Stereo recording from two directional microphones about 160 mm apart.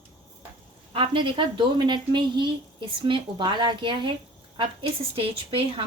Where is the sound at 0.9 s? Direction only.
35° right (ahead or behind).